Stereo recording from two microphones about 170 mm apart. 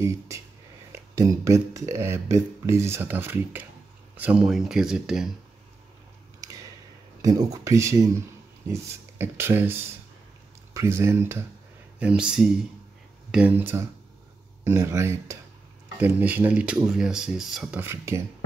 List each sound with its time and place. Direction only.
0.9 s speech: 20° right (ahead or behind); by 5.3 s 5° right (ahead or behind)
7.2 s speech: 20° right (ahead or behind); by 17.7 s centre (ahead or behind)
17.7 s speech: 15° right (ahead or behind)